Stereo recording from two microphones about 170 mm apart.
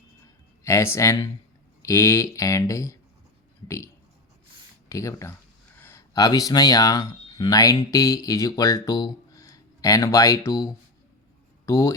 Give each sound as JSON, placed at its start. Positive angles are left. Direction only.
{"t": 0.6, "sound": "speech", "side_deg": 15}
{"t": 4.9, "sound": "speech", "side_deg": 20}